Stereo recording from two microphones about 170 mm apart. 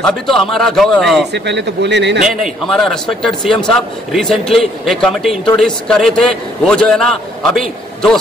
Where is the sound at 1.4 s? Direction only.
90° right.